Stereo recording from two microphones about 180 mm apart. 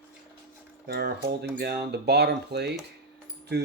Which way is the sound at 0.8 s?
65° right (ahead or behind).